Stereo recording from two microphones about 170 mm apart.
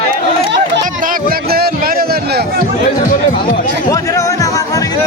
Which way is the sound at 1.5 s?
65° right (ahead or behind).